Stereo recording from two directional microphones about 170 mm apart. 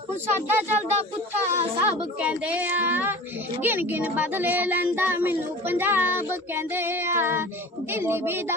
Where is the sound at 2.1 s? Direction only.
5° right (ahead or behind).